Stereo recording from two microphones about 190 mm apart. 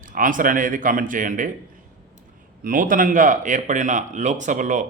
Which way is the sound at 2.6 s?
45° right (ahead or behind).